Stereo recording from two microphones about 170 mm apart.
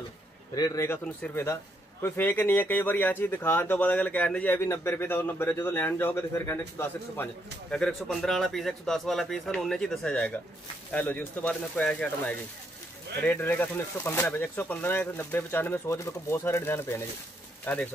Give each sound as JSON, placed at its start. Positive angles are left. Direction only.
{"t": 0.6, "sound": "a man's voice", "side_deg": 20}